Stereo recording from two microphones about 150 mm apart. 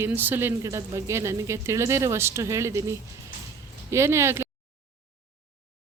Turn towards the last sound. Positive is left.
turn(degrees=-15)  # may be behind; listen again after turning